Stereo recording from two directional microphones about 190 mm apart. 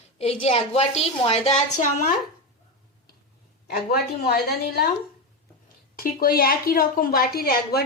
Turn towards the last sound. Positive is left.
turn(degrees=55)  # may be behind; listen again after turning